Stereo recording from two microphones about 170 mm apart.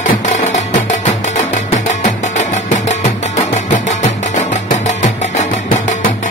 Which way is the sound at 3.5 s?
45° left (ahead or behind).